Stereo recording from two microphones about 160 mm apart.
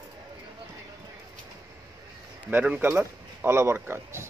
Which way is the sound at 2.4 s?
10° right (ahead or behind).